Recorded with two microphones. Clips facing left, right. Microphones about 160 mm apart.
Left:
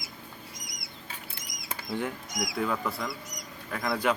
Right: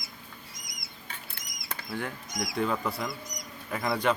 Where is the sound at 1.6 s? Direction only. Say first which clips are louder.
Left 3 dB; 20° left (ahead or behind).